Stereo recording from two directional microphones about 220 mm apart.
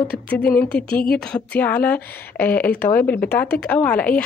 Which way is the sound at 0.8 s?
45° left (ahead or behind).